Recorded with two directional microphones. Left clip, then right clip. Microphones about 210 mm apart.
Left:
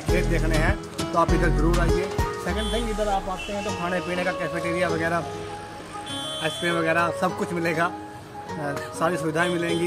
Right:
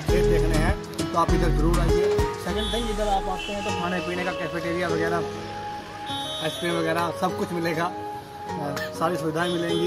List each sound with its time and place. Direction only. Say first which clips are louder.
0.1 s speech: right 3 dB; centre (ahead or behind)
3.8 s speech: left 1 dB; 25° left (ahead or behind)
6.4 s speech: left 3 dB; centre (ahead or behind)
9.0 s speech: left 2 dB; 10° left (ahead or behind)